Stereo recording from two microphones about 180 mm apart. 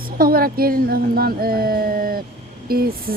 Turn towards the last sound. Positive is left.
turn(degrees=-55)  # may be behind; listen again after turning